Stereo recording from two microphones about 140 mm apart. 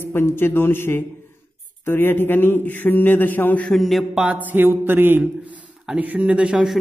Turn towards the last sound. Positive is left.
turn(degrees=-10)  # may be behind; listen again after turning